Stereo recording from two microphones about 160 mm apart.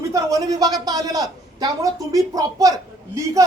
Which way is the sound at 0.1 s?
20° right (ahead or behind).